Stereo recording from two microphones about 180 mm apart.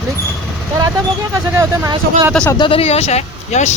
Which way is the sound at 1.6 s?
15° right (ahead or behind).